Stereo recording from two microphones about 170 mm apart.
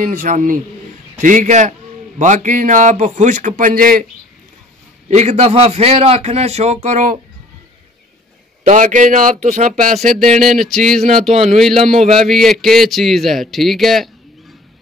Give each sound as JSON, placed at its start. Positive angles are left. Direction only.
{"t": 0.0, "sound": "speech", "side_deg": -50}
{"t": 5.1, "sound": "speech", "side_deg": -40}
{"t": 8.6, "sound": "speech", "side_deg": -45}
{"t": 9.9, "sound": "a man's voice", "side_deg": 0}
{"t": 11.3, "sound": "speech", "side_deg": -40}
{"t": 12.1, "sound": "a man's voice", "side_deg": 0}